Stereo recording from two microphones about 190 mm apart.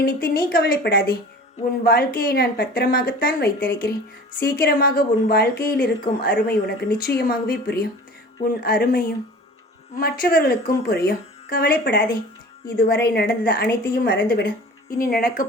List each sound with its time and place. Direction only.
0.0 s speech: 50° left (ahead or behind)